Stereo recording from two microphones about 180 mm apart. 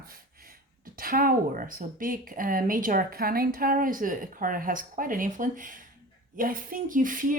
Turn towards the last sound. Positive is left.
turn(degrees=-50)  # may be behind; listen again after turning